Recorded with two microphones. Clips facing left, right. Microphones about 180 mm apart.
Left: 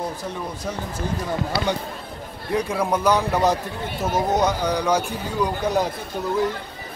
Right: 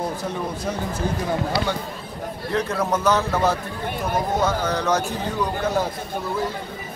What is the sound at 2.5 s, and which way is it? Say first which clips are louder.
A man's voice: left 1 dB; 10° left (ahead or behind).